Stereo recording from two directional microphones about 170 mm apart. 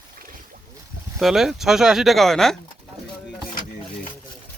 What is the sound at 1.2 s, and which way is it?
Speech, centre (ahead or behind).